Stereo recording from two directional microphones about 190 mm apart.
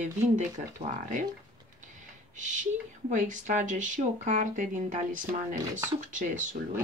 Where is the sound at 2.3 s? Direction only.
40° right (ahead or behind).